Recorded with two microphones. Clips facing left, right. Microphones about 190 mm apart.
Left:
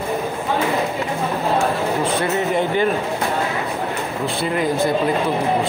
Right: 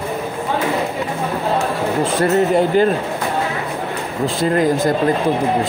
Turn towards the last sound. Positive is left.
turn(degrees=-45)  # may be behind; listen again after turning